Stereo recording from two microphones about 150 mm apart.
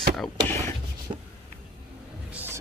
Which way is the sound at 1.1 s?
40° right (ahead or behind).